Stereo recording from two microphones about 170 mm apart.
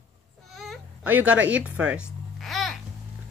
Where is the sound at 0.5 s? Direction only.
Centre (ahead or behind).